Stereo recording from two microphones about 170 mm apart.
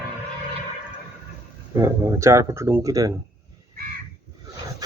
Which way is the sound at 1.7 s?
15° right (ahead or behind).